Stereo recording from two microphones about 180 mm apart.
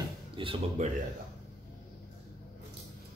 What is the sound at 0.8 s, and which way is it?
Speech, 40° right (ahead or behind).